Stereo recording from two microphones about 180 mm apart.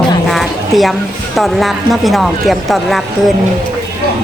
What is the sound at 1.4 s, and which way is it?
A woman's voice, centre (ahead or behind).